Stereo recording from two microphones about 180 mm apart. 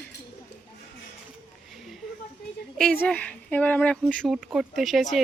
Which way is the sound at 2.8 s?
5° left (ahead or behind).